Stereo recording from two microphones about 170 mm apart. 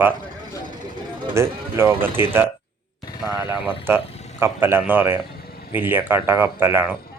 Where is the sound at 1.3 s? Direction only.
15° right (ahead or behind).